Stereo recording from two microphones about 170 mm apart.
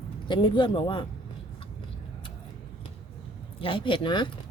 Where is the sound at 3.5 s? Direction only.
30° left (ahead or behind).